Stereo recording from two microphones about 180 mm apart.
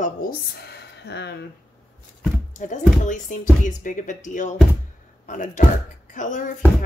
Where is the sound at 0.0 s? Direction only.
60° left (ahead or behind).